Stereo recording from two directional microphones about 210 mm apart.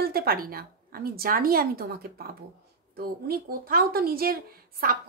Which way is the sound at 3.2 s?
45° right (ahead or behind).